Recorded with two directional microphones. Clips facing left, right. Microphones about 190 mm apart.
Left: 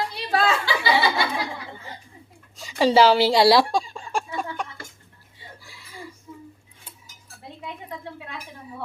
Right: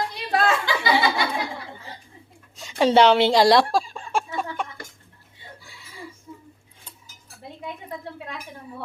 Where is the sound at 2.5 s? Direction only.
Centre (ahead or behind).